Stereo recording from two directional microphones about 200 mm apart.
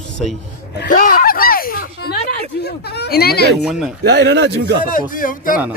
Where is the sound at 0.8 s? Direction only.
45° left (ahead or behind).